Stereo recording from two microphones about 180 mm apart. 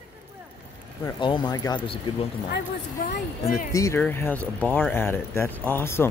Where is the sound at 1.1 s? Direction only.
25° left (ahead or behind).